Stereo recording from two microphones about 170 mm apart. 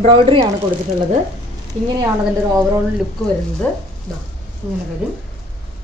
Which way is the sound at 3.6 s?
10° left (ahead or behind).